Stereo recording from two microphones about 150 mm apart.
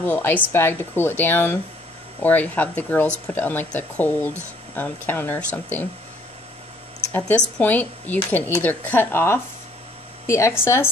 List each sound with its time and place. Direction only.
0.0 s speech: 10° left (ahead or behind)
7.1 s speech: 10° left (ahead or behind)